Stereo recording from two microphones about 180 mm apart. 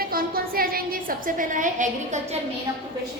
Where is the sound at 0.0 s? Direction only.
55° right (ahead or behind).